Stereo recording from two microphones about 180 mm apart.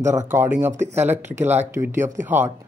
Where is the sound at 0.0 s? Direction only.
15° right (ahead or behind).